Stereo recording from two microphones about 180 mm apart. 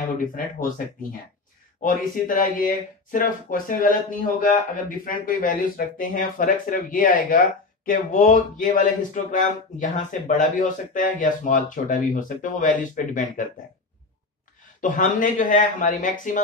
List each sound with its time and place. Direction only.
1.8 s speech: 50° left (ahead or behind)
14.8 s speech: 45° left (ahead or behind)